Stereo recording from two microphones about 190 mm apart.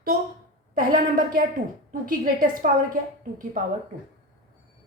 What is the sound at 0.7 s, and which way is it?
A woman's voice, 45° right (ahead or behind).